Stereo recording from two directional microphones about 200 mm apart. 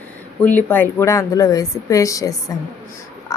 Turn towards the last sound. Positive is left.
turn(degrees=15)  # may be behind; listen again after turning